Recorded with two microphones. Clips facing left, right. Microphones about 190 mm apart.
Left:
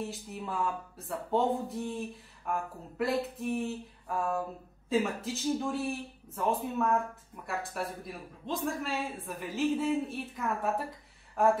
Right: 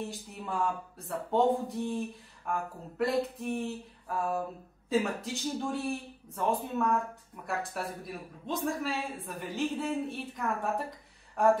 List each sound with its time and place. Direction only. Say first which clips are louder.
0.1 s speech: even; centre (ahead or behind)
4.8 s speech: even; centre (ahead or behind)